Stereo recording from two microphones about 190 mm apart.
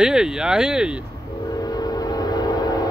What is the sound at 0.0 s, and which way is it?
Speech, 5° right (ahead or behind).